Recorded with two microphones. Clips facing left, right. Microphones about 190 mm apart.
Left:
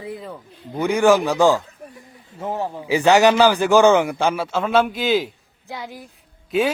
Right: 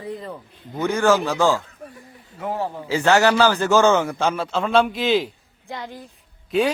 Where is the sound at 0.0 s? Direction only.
5° left (ahead or behind).